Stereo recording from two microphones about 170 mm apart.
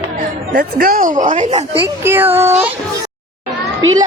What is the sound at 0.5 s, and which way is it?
Speech, 65° right (ahead or behind).